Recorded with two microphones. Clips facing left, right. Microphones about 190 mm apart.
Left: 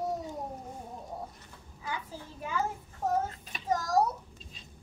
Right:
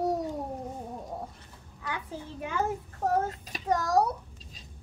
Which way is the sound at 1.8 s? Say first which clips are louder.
Right 2 dB; 65° right (ahead or behind).